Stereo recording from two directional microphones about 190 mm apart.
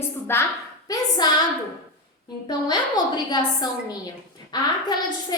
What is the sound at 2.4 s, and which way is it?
A woman's voice, 20° left (ahead or behind).